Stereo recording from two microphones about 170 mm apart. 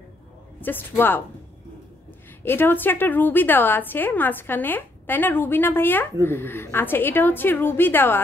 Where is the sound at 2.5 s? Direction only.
10° left (ahead or behind).